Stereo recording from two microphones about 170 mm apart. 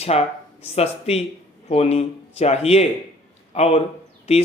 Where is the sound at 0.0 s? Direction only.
35° left (ahead or behind).